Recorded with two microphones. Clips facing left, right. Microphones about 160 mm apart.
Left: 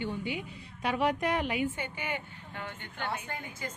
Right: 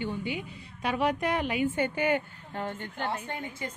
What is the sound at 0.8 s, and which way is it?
A woman's voice, 60° right (ahead or behind).